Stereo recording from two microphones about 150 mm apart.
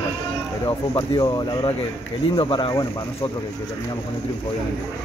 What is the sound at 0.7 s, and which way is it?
A man's voice, 30° left (ahead or behind).